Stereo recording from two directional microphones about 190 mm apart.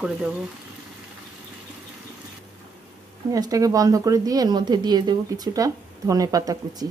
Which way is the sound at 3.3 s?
20° right (ahead or behind).